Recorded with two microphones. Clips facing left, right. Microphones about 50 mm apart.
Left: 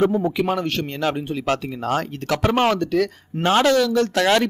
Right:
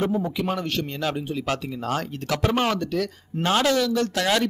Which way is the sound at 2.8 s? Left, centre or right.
Left.